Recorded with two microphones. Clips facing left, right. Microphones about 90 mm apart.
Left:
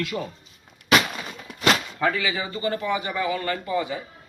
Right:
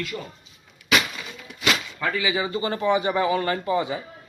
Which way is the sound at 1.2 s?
45° left (ahead or behind).